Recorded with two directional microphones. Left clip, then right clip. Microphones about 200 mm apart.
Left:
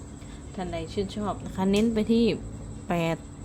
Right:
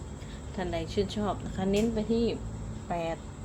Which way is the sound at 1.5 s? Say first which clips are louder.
Left 4 dB; 25° left (ahead or behind).